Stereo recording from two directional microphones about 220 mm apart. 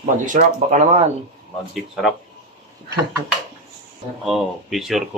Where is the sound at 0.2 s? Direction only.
35° right (ahead or behind).